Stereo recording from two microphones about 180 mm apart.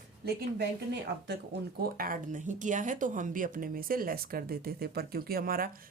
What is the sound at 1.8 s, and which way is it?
Speech, 50° right (ahead or behind).